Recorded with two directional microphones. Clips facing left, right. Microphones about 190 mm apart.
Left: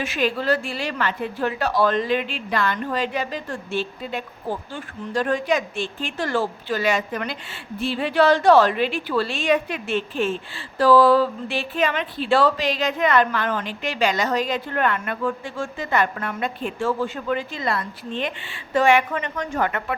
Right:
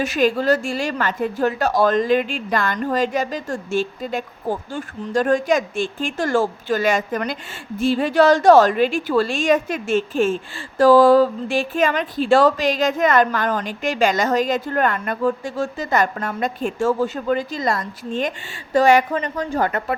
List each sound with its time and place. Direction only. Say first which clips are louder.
0.0 s a woman's voice: right 5 dB; 45° right (ahead or behind)